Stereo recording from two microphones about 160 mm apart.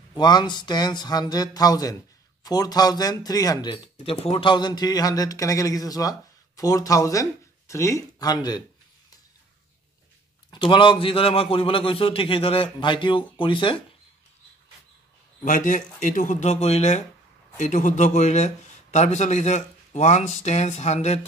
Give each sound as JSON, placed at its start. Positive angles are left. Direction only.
{"t": 0.1, "sound": "speech", "side_deg": 25}
{"t": 10.5, "sound": "a man's voice", "side_deg": 30}
{"t": 15.4, "sound": "speech", "side_deg": 55}